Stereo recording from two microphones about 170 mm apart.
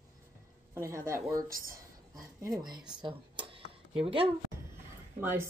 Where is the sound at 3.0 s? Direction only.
30° right (ahead or behind).